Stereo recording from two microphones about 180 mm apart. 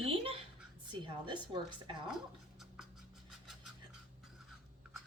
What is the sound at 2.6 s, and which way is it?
Writing, centre (ahead or behind).